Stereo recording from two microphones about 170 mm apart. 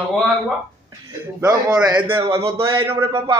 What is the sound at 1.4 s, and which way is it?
Speech, 20° right (ahead or behind).